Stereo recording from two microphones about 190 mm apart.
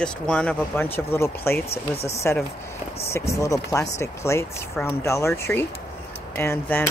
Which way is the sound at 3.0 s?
15° left (ahead or behind).